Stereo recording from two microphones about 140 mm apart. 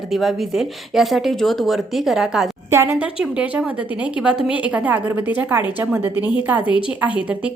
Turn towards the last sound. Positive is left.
turn(degrees=-10)  # may be behind; listen again after turning